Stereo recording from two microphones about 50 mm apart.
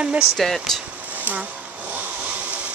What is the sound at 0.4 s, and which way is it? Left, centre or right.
Speech, centre.